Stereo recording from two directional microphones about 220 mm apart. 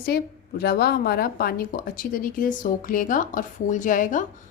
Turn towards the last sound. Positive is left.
turn(degrees=35)  # may be behind; listen again after turning